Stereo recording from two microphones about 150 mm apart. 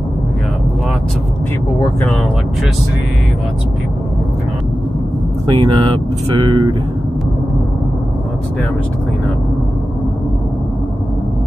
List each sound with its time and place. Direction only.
5.5 s speech: 35° right (ahead or behind)